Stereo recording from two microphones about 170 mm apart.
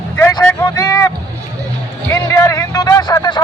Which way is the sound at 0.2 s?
15° left (ahead or behind).